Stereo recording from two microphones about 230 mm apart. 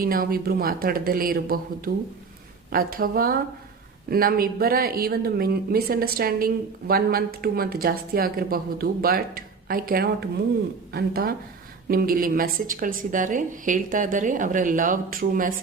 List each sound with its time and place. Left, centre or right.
0.0 s speech: right